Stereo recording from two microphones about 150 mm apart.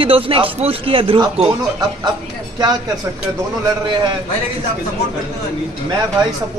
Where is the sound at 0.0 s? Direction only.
35° right (ahead or behind).